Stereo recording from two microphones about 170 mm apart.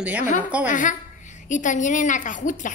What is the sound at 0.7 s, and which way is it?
A woman's voice, 50° left (ahead or behind).